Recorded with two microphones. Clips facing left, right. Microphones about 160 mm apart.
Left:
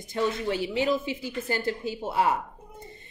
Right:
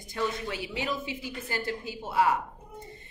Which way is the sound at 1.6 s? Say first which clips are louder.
Left 5 dB; 30° left (ahead or behind).